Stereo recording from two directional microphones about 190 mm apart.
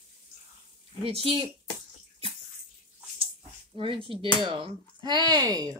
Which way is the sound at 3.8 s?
30° right (ahead or behind).